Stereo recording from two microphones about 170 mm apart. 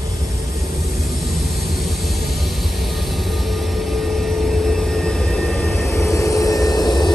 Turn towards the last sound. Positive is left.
turn(degrees=25)  # may be behind; listen again after turning